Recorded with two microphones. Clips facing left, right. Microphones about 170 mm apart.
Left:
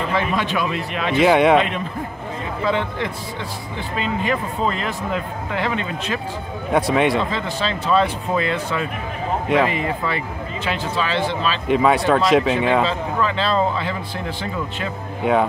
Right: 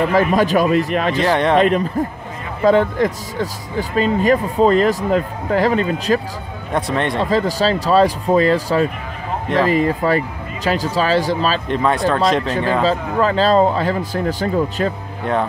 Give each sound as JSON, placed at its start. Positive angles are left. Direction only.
{"t": 0.1, "sound": "speech", "side_deg": -40}
{"t": 1.2, "sound": "speech", "side_deg": 5}
{"t": 2.6, "sound": "speech", "side_deg": -40}
{"t": 6.7, "sound": "speech", "side_deg": 5}
{"t": 7.2, "sound": "speech", "side_deg": -40}
{"t": 11.6, "sound": "speech", "side_deg": 5}
{"t": 12.8, "sound": "speech", "side_deg": -40}
{"t": 15.2, "sound": "speech", "side_deg": 5}